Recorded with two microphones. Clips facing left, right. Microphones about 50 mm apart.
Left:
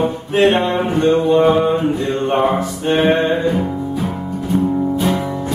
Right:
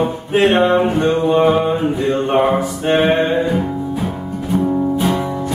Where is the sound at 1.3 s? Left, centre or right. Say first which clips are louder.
Even; centre.